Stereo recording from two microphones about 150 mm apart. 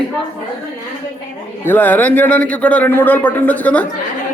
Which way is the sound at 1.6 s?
15° left (ahead or behind).